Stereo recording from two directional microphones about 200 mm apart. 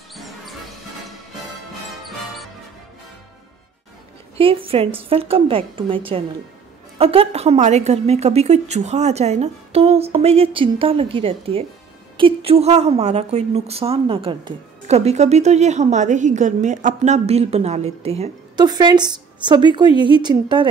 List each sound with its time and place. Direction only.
0.1 s music: centre (ahead or behind)
1.9 s music: centre (ahead or behind)
4.4 s a woman's voice: 25° right (ahead or behind)